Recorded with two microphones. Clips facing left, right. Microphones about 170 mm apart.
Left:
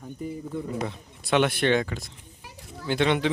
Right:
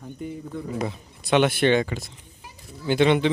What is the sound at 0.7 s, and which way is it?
A man's voice, centre (ahead or behind).